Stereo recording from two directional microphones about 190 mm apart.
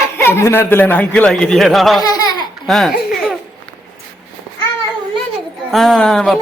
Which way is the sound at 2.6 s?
Centre (ahead or behind).